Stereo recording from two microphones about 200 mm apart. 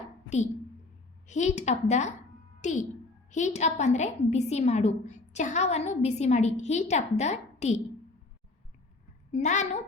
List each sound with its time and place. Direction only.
1.3 s a woman's voice: 35° left (ahead or behind)
9.3 s a woman's voice: 35° left (ahead or behind)